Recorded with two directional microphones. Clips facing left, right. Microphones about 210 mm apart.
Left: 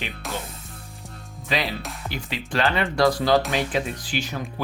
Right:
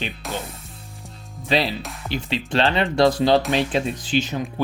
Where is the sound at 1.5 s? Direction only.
30° right (ahead or behind).